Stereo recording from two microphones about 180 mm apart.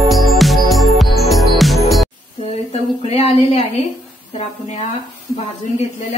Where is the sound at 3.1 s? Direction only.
35° left (ahead or behind).